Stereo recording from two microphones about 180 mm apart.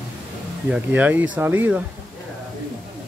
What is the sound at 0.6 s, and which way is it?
A man's voice, 5° right (ahead or behind).